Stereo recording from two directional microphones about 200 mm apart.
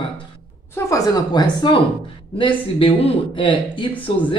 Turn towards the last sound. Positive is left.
turn(degrees=25)  # may be behind; listen again after turning